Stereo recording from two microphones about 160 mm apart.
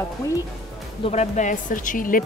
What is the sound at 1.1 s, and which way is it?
Speech, 45° left (ahead or behind).